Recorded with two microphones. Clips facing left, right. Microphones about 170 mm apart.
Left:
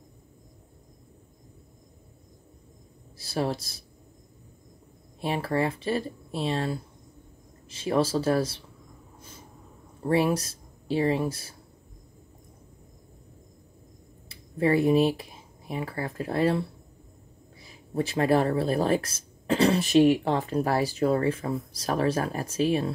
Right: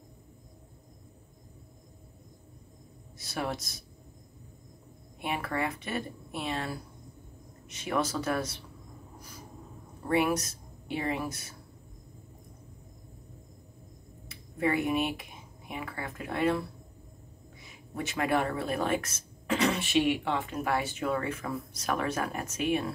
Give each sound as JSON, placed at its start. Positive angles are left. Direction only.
{"t": 3.2, "sound": "speech", "side_deg": 30}
{"t": 5.2, "sound": "speech", "side_deg": 30}
{"t": 10.0, "sound": "speech", "side_deg": 30}
{"t": 14.3, "sound": "speech", "side_deg": 30}